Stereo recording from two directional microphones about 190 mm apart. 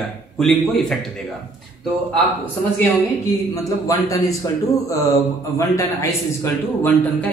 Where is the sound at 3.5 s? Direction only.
15° left (ahead or behind).